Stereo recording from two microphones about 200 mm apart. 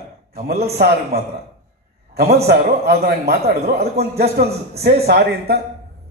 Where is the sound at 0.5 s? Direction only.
50° right (ahead or behind).